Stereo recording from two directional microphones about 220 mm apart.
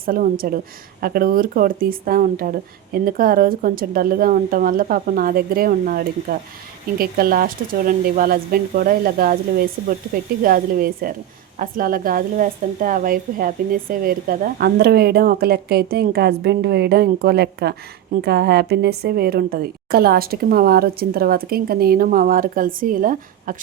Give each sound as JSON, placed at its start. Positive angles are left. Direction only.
{"t": 0.0, "sound": "a woman's voice", "side_deg": -40}